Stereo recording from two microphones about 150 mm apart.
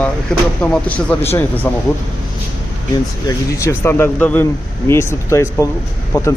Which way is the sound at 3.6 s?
15° left (ahead or behind).